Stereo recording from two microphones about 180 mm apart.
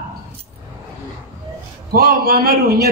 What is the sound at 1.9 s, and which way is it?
Speech, 60° right (ahead or behind).